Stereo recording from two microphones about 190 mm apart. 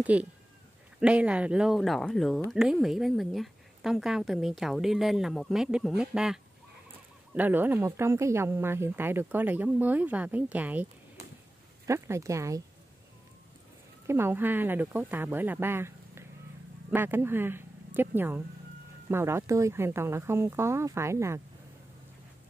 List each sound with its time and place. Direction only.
0.0 s a woman's voice: 10° right (ahead or behind)
14.0 s speech: 15° right (ahead or behind)